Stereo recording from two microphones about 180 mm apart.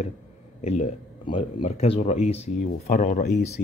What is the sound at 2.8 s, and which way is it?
Speech, 50° left (ahead or behind).